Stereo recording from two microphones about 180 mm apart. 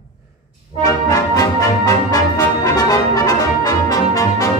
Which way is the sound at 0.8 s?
20° left (ahead or behind).